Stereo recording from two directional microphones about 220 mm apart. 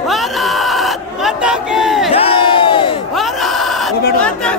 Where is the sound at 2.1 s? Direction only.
25° left (ahead or behind).